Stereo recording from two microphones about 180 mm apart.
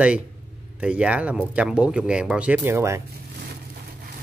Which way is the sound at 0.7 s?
5° right (ahead or behind).